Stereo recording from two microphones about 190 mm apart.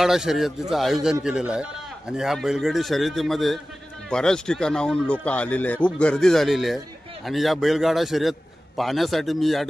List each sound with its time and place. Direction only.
0.0 s speech: centre (ahead or behind)